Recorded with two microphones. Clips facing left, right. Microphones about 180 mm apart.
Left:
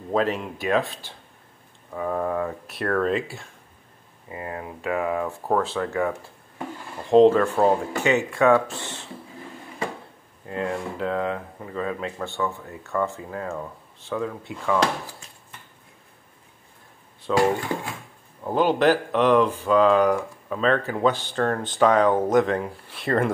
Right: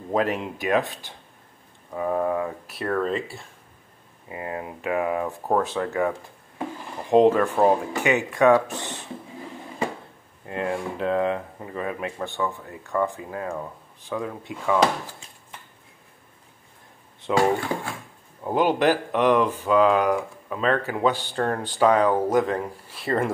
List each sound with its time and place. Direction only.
0.1 s speech: 15° right (ahead or behind)
2.6 s speech: centre (ahead or behind)
4.3 s speech: 20° right (ahead or behind)
10.4 s speech: 20° right (ahead or behind)
17.3 s speech: 15° right (ahead or behind)